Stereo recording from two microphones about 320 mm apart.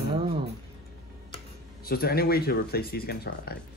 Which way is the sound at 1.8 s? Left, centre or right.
Left.